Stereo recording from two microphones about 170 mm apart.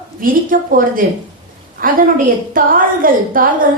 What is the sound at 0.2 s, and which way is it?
A woman's voice, 55° right (ahead or behind).